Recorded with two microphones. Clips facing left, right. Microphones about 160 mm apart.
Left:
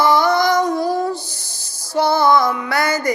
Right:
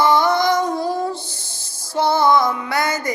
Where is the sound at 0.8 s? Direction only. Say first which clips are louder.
Left 3 dB; 25° right (ahead or behind).